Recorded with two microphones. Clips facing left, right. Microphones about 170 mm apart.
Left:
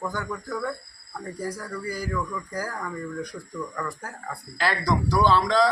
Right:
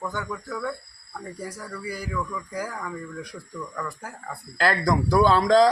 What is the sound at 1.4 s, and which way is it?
Speech, 5° right (ahead or behind).